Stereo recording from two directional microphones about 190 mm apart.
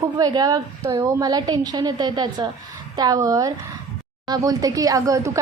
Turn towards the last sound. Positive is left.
turn(degrees=-15)  # may be behind; listen again after turning